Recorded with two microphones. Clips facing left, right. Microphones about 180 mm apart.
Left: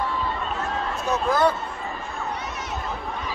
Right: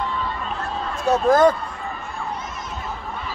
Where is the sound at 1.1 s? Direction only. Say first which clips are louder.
Right 6 dB; 45° right (ahead or behind).